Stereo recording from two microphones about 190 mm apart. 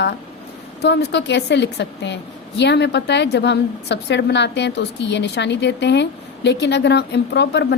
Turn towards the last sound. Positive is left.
turn(degrees=65)  # may be behind; listen again after turning